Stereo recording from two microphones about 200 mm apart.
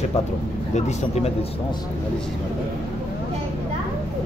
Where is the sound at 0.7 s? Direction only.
35° left (ahead or behind).